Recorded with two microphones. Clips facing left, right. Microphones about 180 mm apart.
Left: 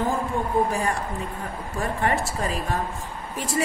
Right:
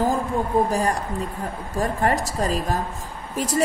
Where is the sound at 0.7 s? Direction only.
40° right (ahead or behind).